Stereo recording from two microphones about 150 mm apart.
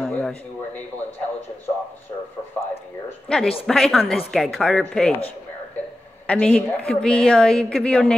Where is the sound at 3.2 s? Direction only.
5° left (ahead or behind).